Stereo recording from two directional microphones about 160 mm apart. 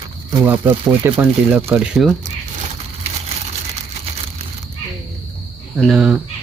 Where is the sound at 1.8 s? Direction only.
Centre (ahead or behind).